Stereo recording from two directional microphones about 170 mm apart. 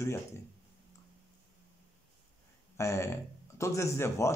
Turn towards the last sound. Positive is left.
turn(degrees=15)  # may be behind; listen again after turning